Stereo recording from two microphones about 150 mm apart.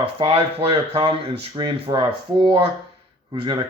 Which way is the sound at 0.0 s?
40° right (ahead or behind).